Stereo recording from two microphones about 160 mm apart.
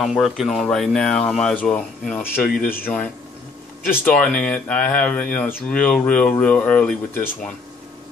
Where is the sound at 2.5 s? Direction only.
60° left (ahead or behind).